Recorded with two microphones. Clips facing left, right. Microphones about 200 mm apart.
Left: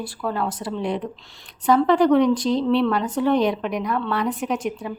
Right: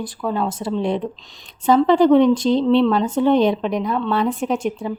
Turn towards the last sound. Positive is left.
turn(degrees=-25)  # may be behind; listen again after turning